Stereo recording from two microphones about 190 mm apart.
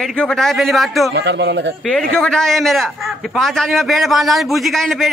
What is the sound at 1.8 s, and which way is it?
A man's voice, 5° left (ahead or behind).